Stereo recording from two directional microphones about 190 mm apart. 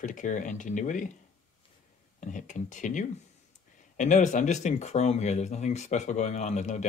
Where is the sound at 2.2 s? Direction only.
40° left (ahead or behind).